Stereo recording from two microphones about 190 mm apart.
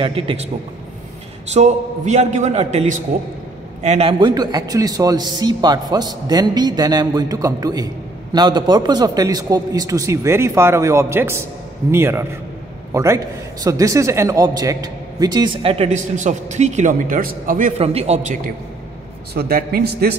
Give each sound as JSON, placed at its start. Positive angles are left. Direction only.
{"t": 0.0, "sound": "a man's voice", "side_deg": -30}
{"t": 1.5, "sound": "a man's voice", "side_deg": -35}
{"t": 19.3, "sound": "a man's voice", "side_deg": -55}